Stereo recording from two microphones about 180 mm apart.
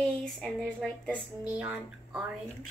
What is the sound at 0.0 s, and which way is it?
A woman's voice, 5° left (ahead or behind).